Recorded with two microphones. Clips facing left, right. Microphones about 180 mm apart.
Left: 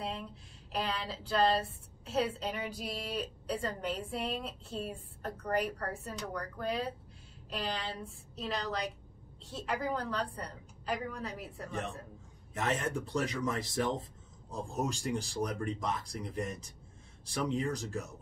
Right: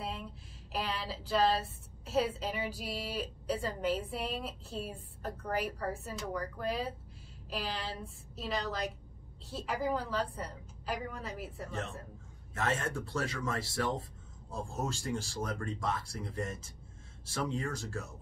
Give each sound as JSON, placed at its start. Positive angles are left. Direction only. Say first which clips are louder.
{"t": 0.7, "sound": "a woman's voice", "louder": "left 1 dB", "side_deg": 0}
{"t": 12.5, "sound": "speech", "louder": "left 1 dB", "side_deg": 15}